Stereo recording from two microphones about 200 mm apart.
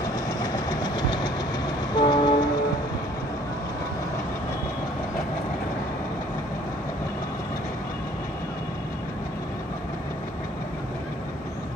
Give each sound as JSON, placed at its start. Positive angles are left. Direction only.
{"t": 0.4, "sound": "vehicle", "side_deg": 20}
{"t": 2.0, "sound": "train", "side_deg": 20}